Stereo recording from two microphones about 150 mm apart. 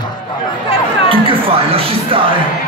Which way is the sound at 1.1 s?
40° right (ahead or behind).